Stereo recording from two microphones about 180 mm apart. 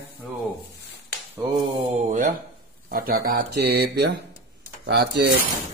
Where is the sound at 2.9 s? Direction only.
55° right (ahead or behind).